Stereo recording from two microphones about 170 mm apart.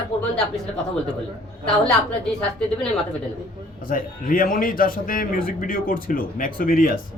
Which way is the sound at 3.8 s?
55° left (ahead or behind).